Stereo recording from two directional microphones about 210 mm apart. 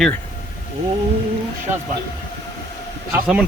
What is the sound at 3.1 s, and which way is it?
Speech, 5° right (ahead or behind).